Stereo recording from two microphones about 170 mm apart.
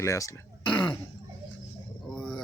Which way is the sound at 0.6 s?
30° left (ahead or behind).